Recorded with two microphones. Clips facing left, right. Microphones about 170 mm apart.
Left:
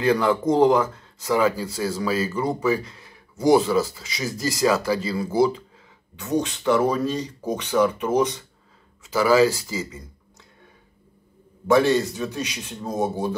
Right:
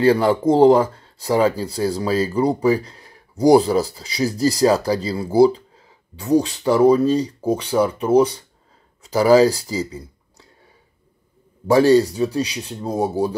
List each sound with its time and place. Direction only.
0.0 s speech: 35° right (ahead or behind)
11.6 s speech: 35° right (ahead or behind)